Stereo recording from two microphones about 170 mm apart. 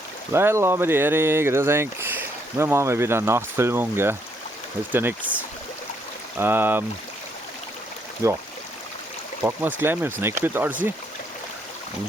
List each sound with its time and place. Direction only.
0.3 s speech: 15° right (ahead or behind)
6.4 s speech: 10° right (ahead or behind)
8.2 s speech: 15° right (ahead or behind)
9.4 s speech: 10° right (ahead or behind)